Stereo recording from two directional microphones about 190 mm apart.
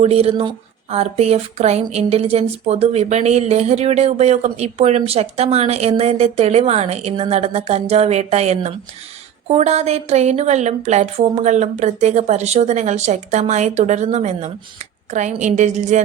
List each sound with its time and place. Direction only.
0.0 s speech: 30° right (ahead or behind)